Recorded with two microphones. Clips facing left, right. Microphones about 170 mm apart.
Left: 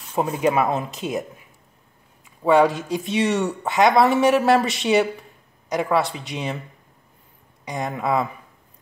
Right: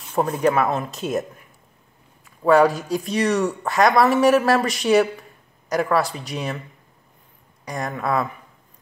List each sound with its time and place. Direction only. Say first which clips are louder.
0.1 s speech: right 1 dB; 5° left (ahead or behind)
0.4 s speech: even; 15° left (ahead or behind)
0.8 s a woman's voice: right 2 dB; centre (ahead or behind)
2.4 s a woman's voice: right 1 dB; centre (ahead or behind)
3.2 s speech: right 1 dB; 25° left (ahead or behind)
3.6 s a woman's voice: left 1 dB; centre (ahead or behind)
7.6 s a woman's voice: left 1 dB; centre (ahead or behind)